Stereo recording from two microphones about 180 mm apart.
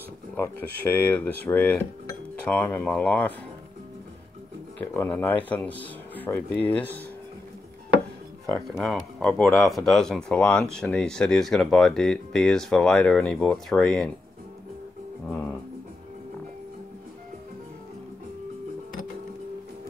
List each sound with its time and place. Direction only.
0.4 s speech: 10° left (ahead or behind)
4.9 s speech: 10° left (ahead or behind)
8.5 s speech: centre (ahead or behind)